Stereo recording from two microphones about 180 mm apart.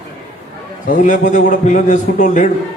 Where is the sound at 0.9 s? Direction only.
45° left (ahead or behind).